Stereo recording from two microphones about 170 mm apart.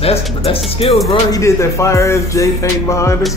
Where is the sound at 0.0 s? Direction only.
35° left (ahead or behind).